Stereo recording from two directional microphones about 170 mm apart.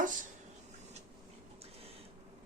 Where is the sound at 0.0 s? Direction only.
50° right (ahead or behind).